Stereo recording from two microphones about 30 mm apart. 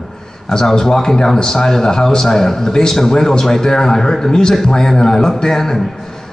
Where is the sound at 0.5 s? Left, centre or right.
Centre.